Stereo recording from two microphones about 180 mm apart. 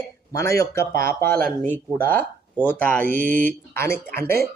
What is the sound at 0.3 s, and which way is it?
Speech, 15° left (ahead or behind).